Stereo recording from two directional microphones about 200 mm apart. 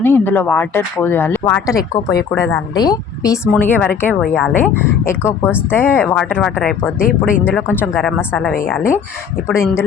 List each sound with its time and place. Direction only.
0.0 s speech: 10° left (ahead or behind)